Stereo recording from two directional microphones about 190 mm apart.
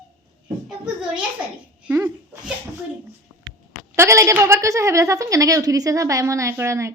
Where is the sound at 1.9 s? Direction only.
10° right (ahead or behind).